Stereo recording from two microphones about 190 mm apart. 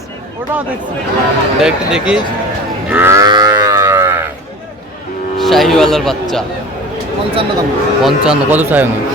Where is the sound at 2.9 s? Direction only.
10° right (ahead or behind).